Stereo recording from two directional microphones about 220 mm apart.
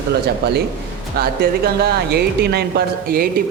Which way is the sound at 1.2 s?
45° right (ahead or behind).